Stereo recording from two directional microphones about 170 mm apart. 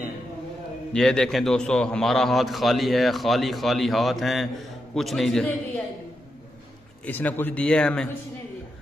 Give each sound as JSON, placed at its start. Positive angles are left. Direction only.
{"t": 0.9, "sound": "a man's voice", "side_deg": 5}
{"t": 7.1, "sound": "a man's voice", "side_deg": 10}